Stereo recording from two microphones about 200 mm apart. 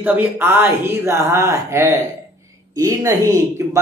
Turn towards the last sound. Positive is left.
turn(degrees=-15)  # may be behind; listen again after turning